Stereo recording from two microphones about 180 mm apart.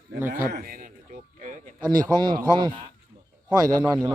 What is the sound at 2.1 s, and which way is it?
Speech, 25° right (ahead or behind).